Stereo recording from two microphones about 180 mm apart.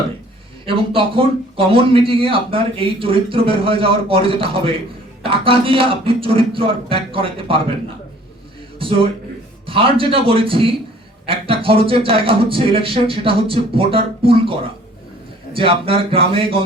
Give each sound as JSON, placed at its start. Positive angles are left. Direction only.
{"t": 0.6, "sound": "a man's voice", "side_deg": -30}
{"t": 8.8, "sound": "speech", "side_deg": -30}